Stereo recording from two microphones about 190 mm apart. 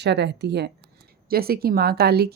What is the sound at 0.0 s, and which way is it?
Speech, 60° right (ahead or behind).